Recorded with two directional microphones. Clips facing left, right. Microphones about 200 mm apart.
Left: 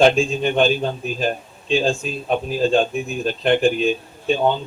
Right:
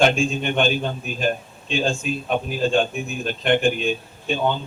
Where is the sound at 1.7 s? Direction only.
35° left (ahead or behind).